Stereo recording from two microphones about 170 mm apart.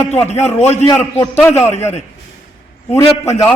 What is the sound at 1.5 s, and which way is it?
Speech, 15° left (ahead or behind).